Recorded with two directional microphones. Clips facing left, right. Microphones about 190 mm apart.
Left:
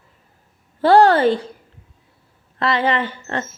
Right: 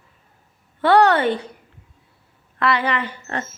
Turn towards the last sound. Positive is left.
turn(degrees=30)  # may be behind; listen again after turning